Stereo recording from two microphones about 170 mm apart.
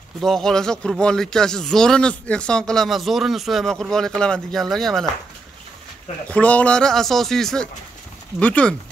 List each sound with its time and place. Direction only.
0.2 s speech: centre (ahead or behind)
6.2 s speech: 10° left (ahead or behind)